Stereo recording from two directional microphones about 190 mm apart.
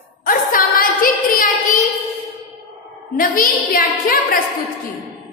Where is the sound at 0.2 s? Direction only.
50° left (ahead or behind).